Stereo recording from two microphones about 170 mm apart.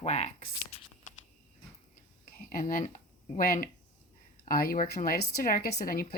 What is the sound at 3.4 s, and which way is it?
Speech, 55° left (ahead or behind).